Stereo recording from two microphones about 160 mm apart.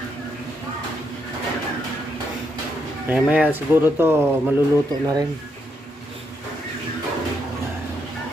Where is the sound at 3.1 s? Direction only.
10° right (ahead or behind).